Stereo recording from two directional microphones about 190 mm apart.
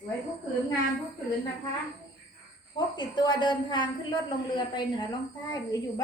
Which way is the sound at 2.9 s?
25° left (ahead or behind).